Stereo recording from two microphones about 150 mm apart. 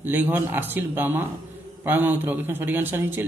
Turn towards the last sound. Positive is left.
turn(degrees=-15)  # may be behind; listen again after turning